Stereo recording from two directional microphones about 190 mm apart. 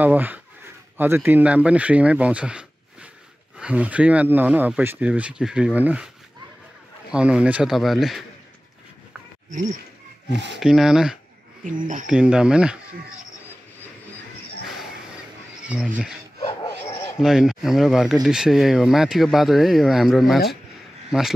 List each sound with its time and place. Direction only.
0.0 s speech: 10° right (ahead or behind)
7.1 s speech: 5° right (ahead or behind)
10.6 s speech: centre (ahead or behind)
11.6 s speech: 45° right (ahead or behind)
12.1 s speech: 5° right (ahead or behind)
15.6 s speech: 5° right (ahead or behind)
16.6 s dog: 15° left (ahead or behind)
17.2 s speech: centre (ahead or behind)